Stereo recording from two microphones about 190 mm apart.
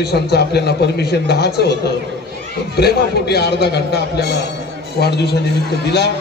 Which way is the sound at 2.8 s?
60° left (ahead or behind).